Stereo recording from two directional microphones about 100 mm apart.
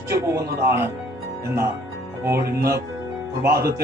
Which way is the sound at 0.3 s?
30° right (ahead or behind).